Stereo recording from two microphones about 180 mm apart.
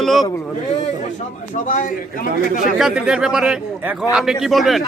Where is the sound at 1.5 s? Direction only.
45° left (ahead or behind).